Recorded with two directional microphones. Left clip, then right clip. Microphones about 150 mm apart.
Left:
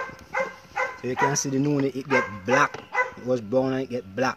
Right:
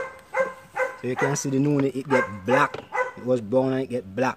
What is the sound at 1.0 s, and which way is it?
Speech, 20° right (ahead or behind).